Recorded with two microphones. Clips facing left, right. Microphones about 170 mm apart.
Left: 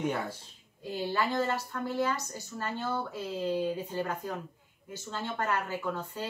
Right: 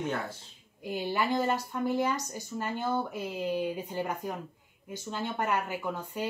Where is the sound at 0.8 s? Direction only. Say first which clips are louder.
Right 1 dB; 15° right (ahead or behind).